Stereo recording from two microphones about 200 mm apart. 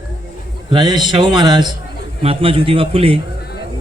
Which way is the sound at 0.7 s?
20° right (ahead or behind).